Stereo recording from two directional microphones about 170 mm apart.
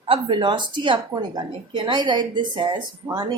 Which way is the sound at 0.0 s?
30° right (ahead or behind).